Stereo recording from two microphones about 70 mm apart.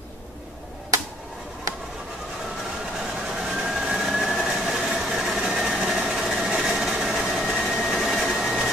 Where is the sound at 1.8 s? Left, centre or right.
Centre.